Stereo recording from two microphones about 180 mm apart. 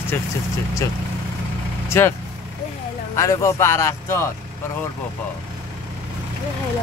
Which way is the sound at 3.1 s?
15° left (ahead or behind).